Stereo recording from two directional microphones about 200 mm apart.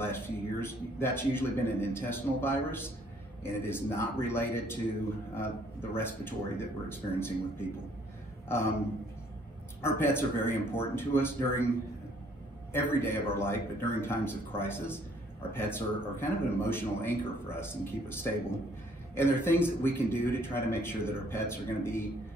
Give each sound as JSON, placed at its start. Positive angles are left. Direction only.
{"t": 0.0, "sound": "a man's voice", "side_deg": 10}
{"t": 9.8, "sound": "a man's voice", "side_deg": 10}
{"t": 12.7, "sound": "a man's voice", "side_deg": 10}